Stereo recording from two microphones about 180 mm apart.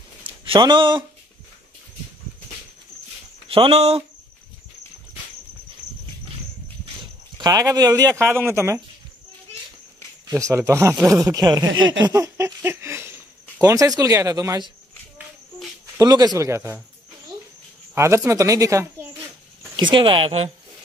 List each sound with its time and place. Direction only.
0.5 s speech: 25° right (ahead or behind)
3.4 s speech: 30° right (ahead or behind)
7.3 s speech: 20° right (ahead or behind)
10.3 s speech: 15° right (ahead or behind)
11.7 s a sound: 90° right
12.0 s speech: 20° right (ahead or behind)
16.0 s speech: 20° right (ahead or behind)
17.9 s speech: 15° right (ahead or behind)